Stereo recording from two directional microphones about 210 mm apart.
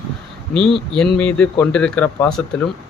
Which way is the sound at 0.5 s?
Centre (ahead or behind).